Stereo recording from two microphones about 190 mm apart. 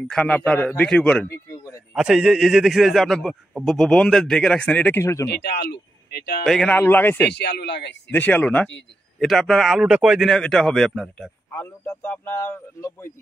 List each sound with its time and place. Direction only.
0.0 s a man's voice: 5° left (ahead or behind)
2.0 s a man's voice: centre (ahead or behind); by 5.3 s 15° left (ahead or behind)
5.3 s speech: 60° left (ahead or behind)
6.4 s a man's voice: centre (ahead or behind)
7.2 s a man's voice: 60° left (ahead or behind)
8.1 s a man's voice: 10° left (ahead or behind)